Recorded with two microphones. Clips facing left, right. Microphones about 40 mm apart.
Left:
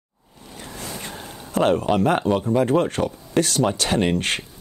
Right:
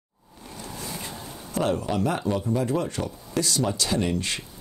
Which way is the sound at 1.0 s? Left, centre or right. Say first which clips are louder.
Left 2 dB; left.